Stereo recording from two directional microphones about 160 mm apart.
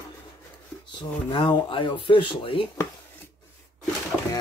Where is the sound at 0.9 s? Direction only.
30° left (ahead or behind).